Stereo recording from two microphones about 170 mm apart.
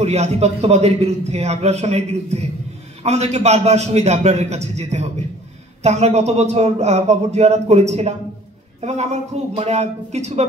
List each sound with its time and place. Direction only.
0.0 s a man's voice: 40° right (ahead or behind)